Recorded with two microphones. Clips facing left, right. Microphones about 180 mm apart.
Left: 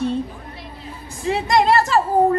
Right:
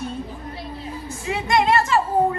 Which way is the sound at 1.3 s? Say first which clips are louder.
Left 3 dB; 35° left (ahead or behind).